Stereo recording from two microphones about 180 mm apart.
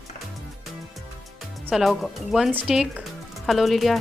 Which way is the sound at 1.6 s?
5° right (ahead or behind).